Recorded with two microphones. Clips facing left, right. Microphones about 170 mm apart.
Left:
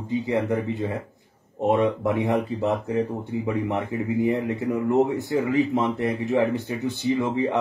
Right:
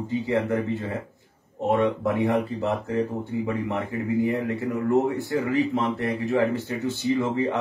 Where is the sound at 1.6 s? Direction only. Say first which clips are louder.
Left 1 dB; 20° left (ahead or behind).